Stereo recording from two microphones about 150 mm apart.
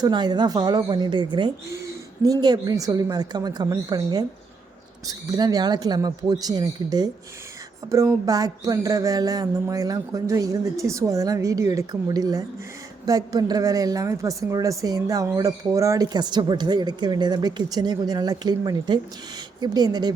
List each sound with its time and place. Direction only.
0.0 s speech: 30° right (ahead or behind)